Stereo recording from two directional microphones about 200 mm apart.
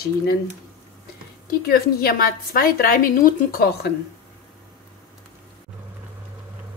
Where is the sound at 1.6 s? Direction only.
50° left (ahead or behind).